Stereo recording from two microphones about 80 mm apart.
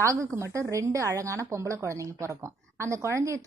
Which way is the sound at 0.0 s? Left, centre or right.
Right.